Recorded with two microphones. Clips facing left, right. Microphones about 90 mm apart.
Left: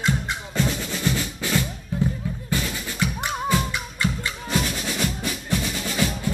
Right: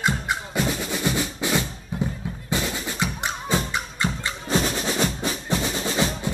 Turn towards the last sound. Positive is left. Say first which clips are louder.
# right 1 dB
turn(degrees=-30)  # may be behind; listen again after turning